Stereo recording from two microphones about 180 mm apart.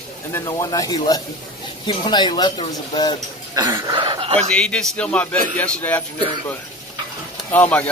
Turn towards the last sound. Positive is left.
turn(degrees=10)  # may be behind; listen again after turning